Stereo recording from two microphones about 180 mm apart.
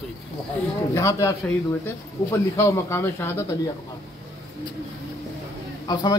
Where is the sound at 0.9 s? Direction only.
15° left (ahead or behind).